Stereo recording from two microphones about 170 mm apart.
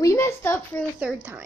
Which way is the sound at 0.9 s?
10° right (ahead or behind).